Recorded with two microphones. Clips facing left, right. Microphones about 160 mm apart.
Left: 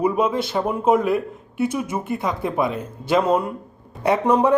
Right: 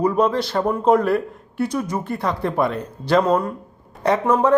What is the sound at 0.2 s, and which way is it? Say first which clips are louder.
Speech: right 2 dB; 5° left (ahead or behind).